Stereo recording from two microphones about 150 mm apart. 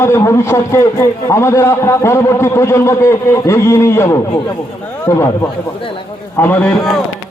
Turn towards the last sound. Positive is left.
turn(degrees=10)  # may be behind; listen again after turning